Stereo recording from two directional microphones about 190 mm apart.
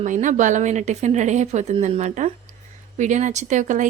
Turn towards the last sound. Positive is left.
turn(degrees=-40)  # may be behind; listen again after turning